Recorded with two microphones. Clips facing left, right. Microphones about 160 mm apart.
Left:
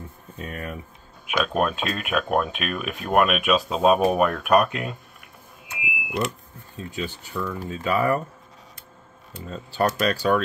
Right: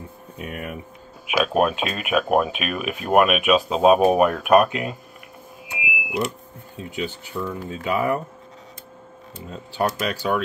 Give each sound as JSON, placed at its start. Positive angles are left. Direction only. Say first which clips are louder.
{"t": 0.4, "sound": "speech", "louder": "right 1 dB", "side_deg": -15}
{"t": 5.7, "sound": "a sound", "louder": "right 3 dB", "side_deg": -15}
{"t": 6.8, "sound": "speech", "louder": "right 2 dB", "side_deg": -15}
{"t": 9.5, "sound": "speech", "louder": "left 1 dB", "side_deg": -10}